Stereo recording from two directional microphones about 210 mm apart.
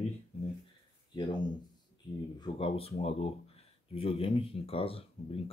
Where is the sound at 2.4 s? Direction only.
25° left (ahead or behind).